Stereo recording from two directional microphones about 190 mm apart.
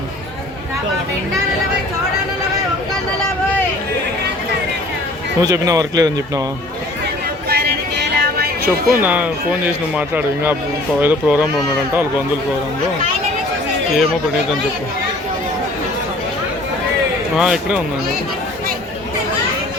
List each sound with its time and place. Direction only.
5.4 s speech: 20° right (ahead or behind)
7.5 s music: 55° right (ahead or behind)
9.0 s a man's voice: 10° right (ahead or behind)
17.3 s speech: 5° right (ahead or behind)